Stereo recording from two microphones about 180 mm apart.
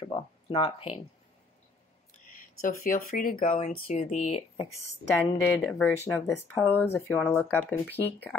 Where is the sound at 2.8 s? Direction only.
50° left (ahead or behind).